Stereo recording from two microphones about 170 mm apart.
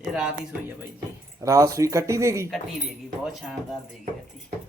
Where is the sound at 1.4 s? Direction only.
20° right (ahead or behind).